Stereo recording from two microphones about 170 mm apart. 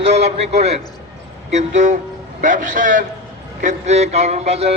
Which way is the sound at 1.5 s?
45° right (ahead or behind).